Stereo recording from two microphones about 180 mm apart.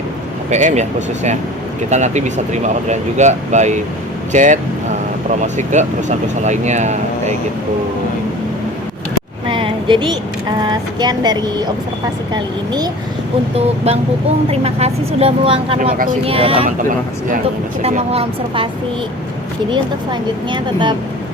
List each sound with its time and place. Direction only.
0.5 s speech: 40° right (ahead or behind)
9.5 s a sound: 25° right (ahead or behind)
10.6 s speech: 25° right (ahead or behind)
14.5 s speech: 35° right (ahead or behind)
17.8 s speech: 35° right (ahead or behind)
20.5 s speech: 25° right (ahead or behind)